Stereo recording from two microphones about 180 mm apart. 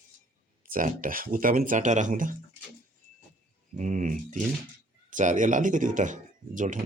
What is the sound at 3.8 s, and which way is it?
A man's voice, 45° right (ahead or behind).